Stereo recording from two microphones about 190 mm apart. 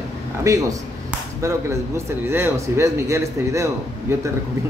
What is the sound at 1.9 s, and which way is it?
A man's voice, 15° right (ahead or behind).